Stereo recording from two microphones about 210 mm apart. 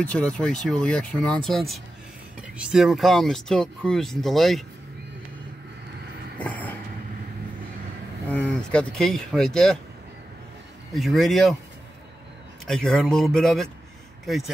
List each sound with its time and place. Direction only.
0.0 s speech: 5° left (ahead or behind)
6.3 s vehicle: 5° left (ahead or behind)
8.3 s speech: 5° left (ahead or behind)
10.9 s speech: centre (ahead or behind)
12.6 s speech: centre (ahead or behind)